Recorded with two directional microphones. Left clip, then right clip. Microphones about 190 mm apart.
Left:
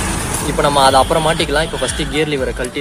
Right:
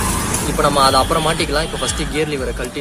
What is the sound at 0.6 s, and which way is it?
Speech, 20° left (ahead or behind).